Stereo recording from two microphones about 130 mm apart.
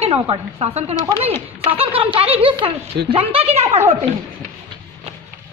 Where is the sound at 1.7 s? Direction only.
45° right (ahead or behind).